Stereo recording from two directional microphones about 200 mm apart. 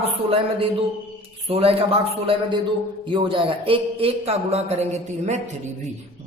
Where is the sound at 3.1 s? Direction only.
25° right (ahead or behind).